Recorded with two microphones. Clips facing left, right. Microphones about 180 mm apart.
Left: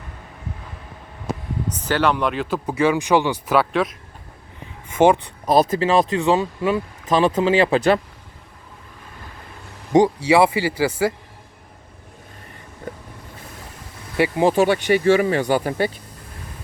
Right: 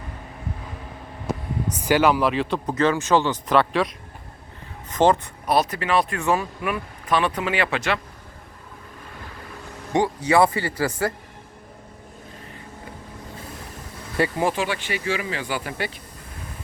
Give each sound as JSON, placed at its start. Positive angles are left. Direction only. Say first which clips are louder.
{"t": 1.7, "sound": "speech", "louder": "right 2 dB", "side_deg": -10}
{"t": 4.9, "sound": "speech", "louder": "left 3 dB", "side_deg": 10}
{"t": 5.5, "sound": "speech", "louder": "left 5 dB", "side_deg": 25}
{"t": 9.9, "sound": "speech", "louder": "left 7 dB", "side_deg": 20}
{"t": 10.2, "sound": "speech", "louder": "left 3 dB", "side_deg": 10}
{"t": 14.5, "sound": "speech", "louder": "left 10 dB", "side_deg": 50}